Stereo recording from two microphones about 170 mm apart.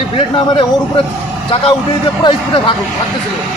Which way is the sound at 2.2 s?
25° left (ahead or behind).